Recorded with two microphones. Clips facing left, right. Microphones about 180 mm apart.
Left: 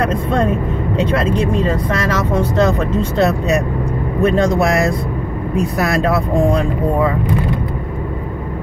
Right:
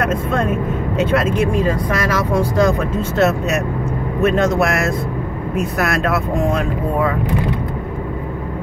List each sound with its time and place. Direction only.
1.3 s speech: 30° left (ahead or behind)
2.0 s speech: 10° right (ahead or behind)